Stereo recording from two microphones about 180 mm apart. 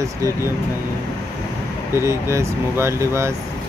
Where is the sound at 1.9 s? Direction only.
15° right (ahead or behind).